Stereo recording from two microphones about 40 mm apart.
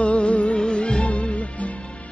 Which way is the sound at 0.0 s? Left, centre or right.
Left.